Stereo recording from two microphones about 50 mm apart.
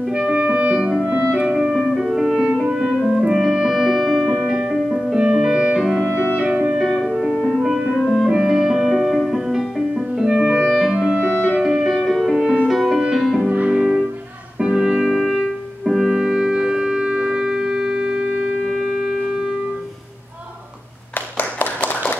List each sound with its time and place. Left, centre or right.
0.1 s music: centre
1.0 s clarinet: right
1.5 s music: centre
2.5 s music: centre
4.7 s music: centre
5.1 s music: centre
7.5 s music: centre
10.7 s clarinet: centre
11.7 s music: centre
13.5 s music: right
13.7 s music: centre
15.0 s music: centre
21.4 s clapping: left